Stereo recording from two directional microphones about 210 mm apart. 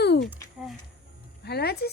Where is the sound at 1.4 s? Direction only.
50° left (ahead or behind).